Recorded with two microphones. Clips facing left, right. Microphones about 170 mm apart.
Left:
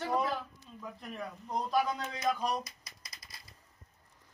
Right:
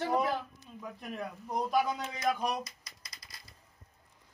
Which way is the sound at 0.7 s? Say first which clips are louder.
Right 2 dB; 10° right (ahead or behind).